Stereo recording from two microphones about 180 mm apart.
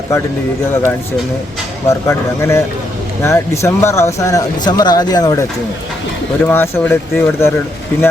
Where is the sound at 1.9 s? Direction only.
15° left (ahead or behind).